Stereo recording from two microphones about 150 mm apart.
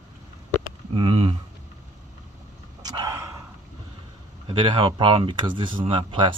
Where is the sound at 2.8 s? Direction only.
25° right (ahead or behind).